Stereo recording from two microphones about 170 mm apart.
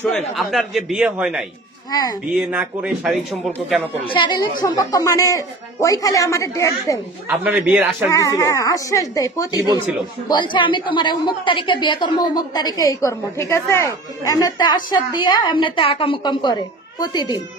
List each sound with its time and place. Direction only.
0.3 s speech: centre (ahead or behind)
1.9 s a woman's voice: 20° left (ahead or behind)
2.2 s speech: 5° right (ahead or behind)
4.0 s a woman's voice: 30° left (ahead or behind)
7.2 s speech: 10° right (ahead or behind)
8.1 s a woman's voice: 20° left (ahead or behind)